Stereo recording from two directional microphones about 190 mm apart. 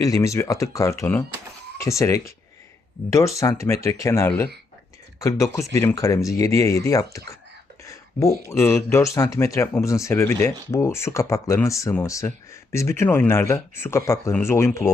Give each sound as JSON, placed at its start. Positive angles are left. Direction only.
{"t": 0.0, "sound": "speech", "side_deg": 15}
{"t": 7.9, "sound": "a sound", "side_deg": 15}
{"t": 8.4, "sound": "speech", "side_deg": 15}